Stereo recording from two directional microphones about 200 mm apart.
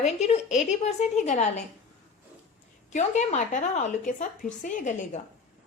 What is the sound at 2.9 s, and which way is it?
A woman's voice, 35° left (ahead or behind).